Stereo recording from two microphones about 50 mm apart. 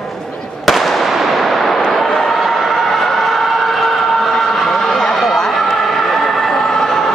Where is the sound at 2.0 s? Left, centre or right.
Centre.